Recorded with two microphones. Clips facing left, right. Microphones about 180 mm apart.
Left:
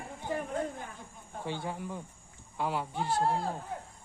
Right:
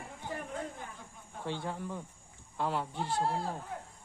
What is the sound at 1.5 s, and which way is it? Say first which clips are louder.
A man's voice: even; 10° left (ahead or behind).